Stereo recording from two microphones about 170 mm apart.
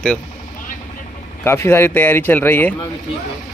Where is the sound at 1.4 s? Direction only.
15° left (ahead or behind).